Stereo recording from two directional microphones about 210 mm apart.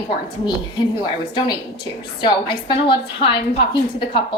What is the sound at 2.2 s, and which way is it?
Speech, 25° left (ahead or behind).